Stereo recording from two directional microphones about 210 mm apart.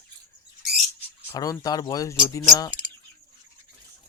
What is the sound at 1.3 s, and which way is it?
Speech, 15° left (ahead or behind).